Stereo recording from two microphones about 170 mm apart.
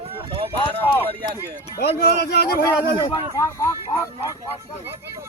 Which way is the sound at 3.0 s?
20° left (ahead or behind).